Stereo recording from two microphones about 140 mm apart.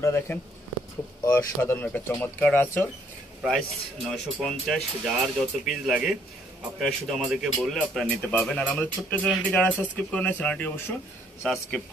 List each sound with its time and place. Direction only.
0.0 s speech: 20° left (ahead or behind)
3.4 s speech: centre (ahead or behind)